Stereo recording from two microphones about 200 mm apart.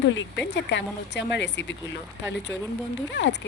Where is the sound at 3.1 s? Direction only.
60° left (ahead or behind).